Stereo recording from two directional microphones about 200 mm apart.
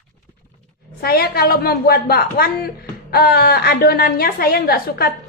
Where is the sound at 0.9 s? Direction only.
50° left (ahead or behind).